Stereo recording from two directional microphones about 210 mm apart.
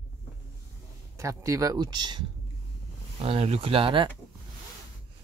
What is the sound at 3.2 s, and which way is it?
Speech, 30° right (ahead or behind).